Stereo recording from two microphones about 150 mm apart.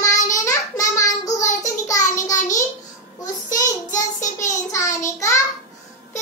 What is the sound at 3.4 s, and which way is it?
Child singing, 25° left (ahead or behind).